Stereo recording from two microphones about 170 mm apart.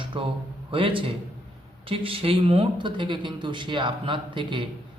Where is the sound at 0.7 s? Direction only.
30° right (ahead or behind).